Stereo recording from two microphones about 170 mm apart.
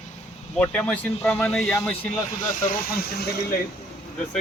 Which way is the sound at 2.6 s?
60° left (ahead or behind).